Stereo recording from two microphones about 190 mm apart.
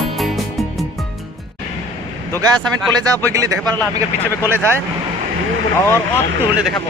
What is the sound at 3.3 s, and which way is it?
Speech, 15° right (ahead or behind).